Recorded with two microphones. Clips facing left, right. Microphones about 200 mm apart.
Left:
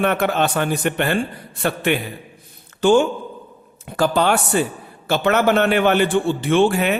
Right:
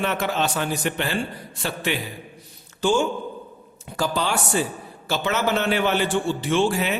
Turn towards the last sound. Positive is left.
turn(degrees=60)  # may be behind; listen again after turning